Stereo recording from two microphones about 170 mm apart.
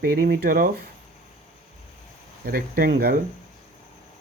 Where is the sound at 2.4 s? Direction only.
60° right (ahead or behind).